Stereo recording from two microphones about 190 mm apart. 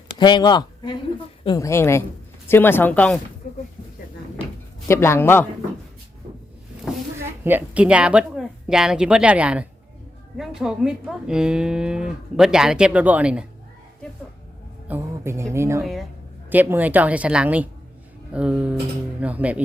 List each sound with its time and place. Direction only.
0.2 s speech: 25° left (ahead or behind)
4.9 s speech: 15° left (ahead or behind)
7.4 s speech: 10° right (ahead or behind)
14.8 s music: 10° right (ahead or behind)
15.5 s a woman's voice: 15° right (ahead or behind)
15.8 s a woman's voice: centre (ahead or behind)